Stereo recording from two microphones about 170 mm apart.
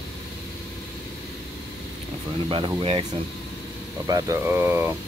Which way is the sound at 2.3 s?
30° right (ahead or behind).